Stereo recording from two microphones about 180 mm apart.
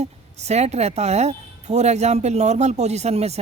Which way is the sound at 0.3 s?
40° right (ahead or behind).